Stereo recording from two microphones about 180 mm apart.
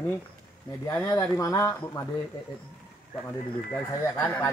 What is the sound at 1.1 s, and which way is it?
Speech, 20° left (ahead or behind).